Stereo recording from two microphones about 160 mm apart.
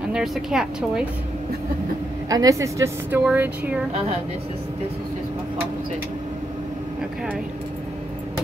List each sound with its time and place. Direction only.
0.1 s speech: 5° right (ahead or behind)
2.2 s a woman's voice: 20° right (ahead or behind)